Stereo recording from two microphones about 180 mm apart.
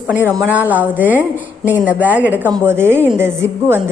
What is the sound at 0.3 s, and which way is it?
Speech, 10° right (ahead or behind).